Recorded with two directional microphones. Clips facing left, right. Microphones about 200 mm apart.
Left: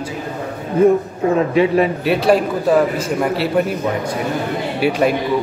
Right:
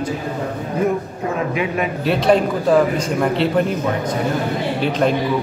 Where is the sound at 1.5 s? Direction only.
30° left (ahead or behind).